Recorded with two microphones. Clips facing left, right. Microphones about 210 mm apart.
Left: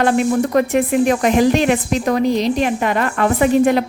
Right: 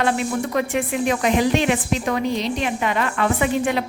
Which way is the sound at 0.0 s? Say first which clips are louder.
Left 6 dB; 45° left (ahead or behind).